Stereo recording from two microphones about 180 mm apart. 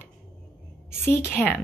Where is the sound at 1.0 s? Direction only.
15° left (ahead or behind).